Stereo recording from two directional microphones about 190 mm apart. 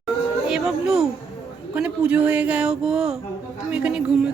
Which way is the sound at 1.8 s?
5° right (ahead or behind).